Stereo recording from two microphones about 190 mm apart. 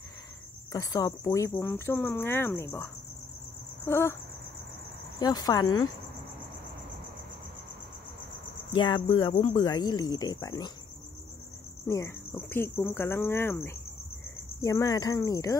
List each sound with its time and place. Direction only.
0.7 s speech: 20° left (ahead or behind)
5.2 s speech: 20° left (ahead or behind)
8.7 s speech: 25° left (ahead or behind)
11.9 s speech: 15° left (ahead or behind)